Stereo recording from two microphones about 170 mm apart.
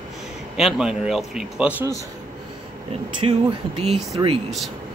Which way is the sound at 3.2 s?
35° right (ahead or behind).